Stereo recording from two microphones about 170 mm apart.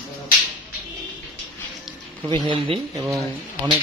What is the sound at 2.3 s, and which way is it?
Speech, 30° right (ahead or behind).